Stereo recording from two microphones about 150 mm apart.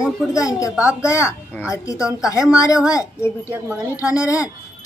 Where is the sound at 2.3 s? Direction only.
20° left (ahead or behind).